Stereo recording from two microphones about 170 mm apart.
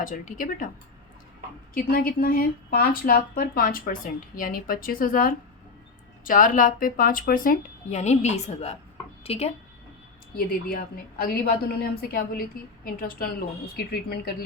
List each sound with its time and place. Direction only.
0.0 s speech: 50° left (ahead or behind)
1.7 s speech: 60° left (ahead or behind); by 9.5 s 35° left (ahead or behind)
10.3 s speech: 60° left (ahead or behind)